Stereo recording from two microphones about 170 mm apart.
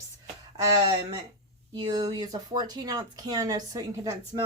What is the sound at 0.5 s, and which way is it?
Speech, 25° right (ahead or behind).